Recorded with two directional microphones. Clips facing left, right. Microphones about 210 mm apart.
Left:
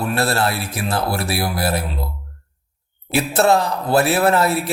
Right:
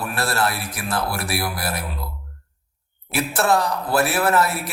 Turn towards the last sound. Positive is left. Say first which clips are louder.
# left 3 dB
turn(degrees=30)  # may be behind; listen again after turning